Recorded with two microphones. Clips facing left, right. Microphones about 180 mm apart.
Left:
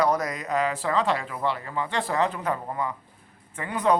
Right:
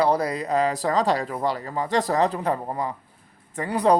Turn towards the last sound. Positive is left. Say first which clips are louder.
# right 3 dB
turn(degrees=-35)  # may be behind; listen again after turning